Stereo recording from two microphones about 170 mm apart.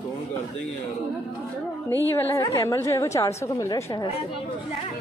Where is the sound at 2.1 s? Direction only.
15° left (ahead or behind).